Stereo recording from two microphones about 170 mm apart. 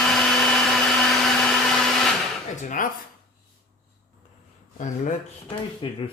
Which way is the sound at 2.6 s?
50° left (ahead or behind).